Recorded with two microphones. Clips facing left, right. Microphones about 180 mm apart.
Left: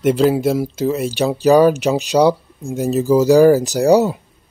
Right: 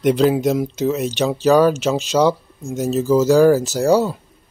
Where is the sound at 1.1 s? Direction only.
10° left (ahead or behind).